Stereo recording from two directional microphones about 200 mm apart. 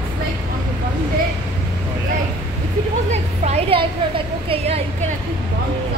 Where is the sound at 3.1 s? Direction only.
30° right (ahead or behind).